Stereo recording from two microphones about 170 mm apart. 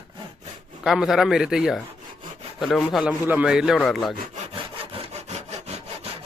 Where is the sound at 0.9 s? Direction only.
Centre (ahead or behind).